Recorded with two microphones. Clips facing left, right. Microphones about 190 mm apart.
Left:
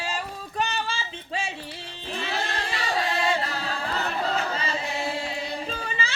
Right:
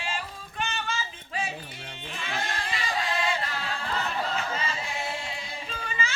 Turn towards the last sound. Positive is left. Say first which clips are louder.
# left 2 dB
turn(degrees=35)  # may be behind; listen again after turning